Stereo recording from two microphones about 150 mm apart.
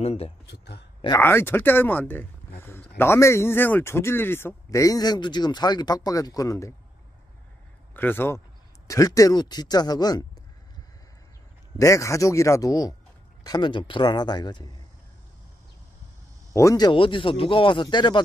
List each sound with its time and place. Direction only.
0.0 s speech: 45° left (ahead or behind)
0.5 s speech: 90° left
1.2 s speech: 15° left (ahead or behind)
7.9 s speech: 15° left (ahead or behind)
11.8 s speech: 20° left (ahead or behind)
16.5 s speech: 25° left (ahead or behind)